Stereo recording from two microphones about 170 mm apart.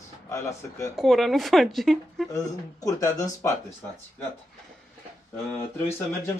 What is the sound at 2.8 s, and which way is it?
Speech, 20° left (ahead or behind).